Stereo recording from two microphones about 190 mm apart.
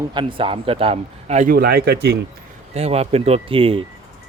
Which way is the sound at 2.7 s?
35° right (ahead or behind).